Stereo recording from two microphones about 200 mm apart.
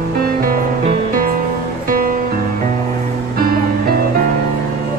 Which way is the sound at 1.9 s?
45° right (ahead or behind).